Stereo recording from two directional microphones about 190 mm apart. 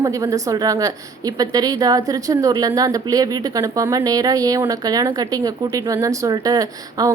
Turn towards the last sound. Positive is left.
turn(degrees=-20)  # may be behind; listen again after turning